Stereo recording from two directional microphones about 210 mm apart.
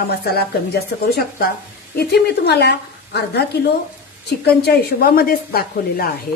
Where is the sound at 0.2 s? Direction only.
50° left (ahead or behind).